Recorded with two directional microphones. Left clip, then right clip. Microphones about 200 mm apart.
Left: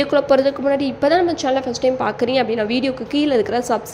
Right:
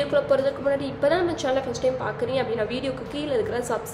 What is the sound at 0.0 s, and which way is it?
A woman's voice, 35° left (ahead or behind).